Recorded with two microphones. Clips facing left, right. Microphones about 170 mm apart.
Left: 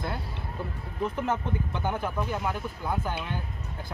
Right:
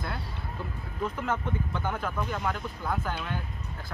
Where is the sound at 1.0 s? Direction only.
20° left (ahead or behind).